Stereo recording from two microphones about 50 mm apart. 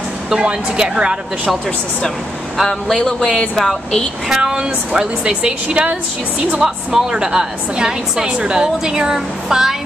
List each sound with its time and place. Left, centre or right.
0.4 s a woman's voice: centre
2.5 s a man's voice: centre
4.3 s a woman's voice: centre
6.6 s a woman's voice: centre